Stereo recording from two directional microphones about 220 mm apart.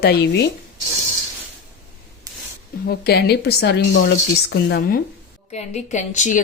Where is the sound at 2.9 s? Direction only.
45° left (ahead or behind).